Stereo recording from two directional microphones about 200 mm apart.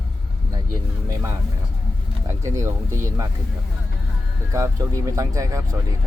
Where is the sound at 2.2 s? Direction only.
15° right (ahead or behind).